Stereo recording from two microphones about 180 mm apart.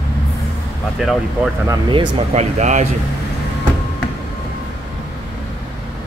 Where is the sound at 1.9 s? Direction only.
30° right (ahead or behind).